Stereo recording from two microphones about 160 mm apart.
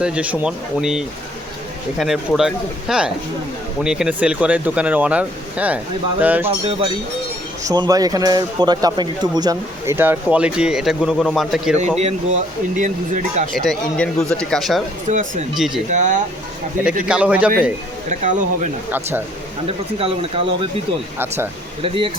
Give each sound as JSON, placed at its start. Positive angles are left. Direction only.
{"t": 0.0, "sound": "speech", "side_deg": -10}
{"t": 7.6, "sound": "speech", "side_deg": -25}
{"t": 11.8, "sound": "speech", "side_deg": -45}
{"t": 13.5, "sound": "speech", "side_deg": 0}
{"t": 15.0, "sound": "speech", "side_deg": -50}
{"t": 15.5, "sound": "speech", "side_deg": 0}
{"t": 15.9, "sound": "speech", "side_deg": -50}
{"t": 17.1, "sound": "speech", "side_deg": -5}
{"t": 18.1, "sound": "speech", "side_deg": -50}
{"t": 18.9, "sound": "speech", "side_deg": -10}
{"t": 19.6, "sound": "speech", "side_deg": -35}
{"t": 21.2, "sound": "speech", "side_deg": -15}
{"t": 21.8, "sound": "speech", "side_deg": -35}